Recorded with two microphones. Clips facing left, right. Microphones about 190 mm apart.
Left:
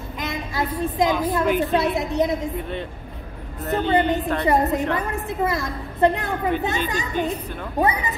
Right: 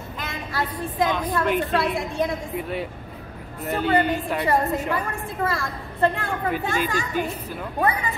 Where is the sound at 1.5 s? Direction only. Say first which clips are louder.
Left 2 dB; centre (ahead or behind).